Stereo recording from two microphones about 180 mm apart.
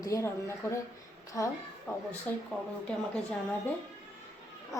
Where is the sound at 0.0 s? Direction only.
15° left (ahead or behind).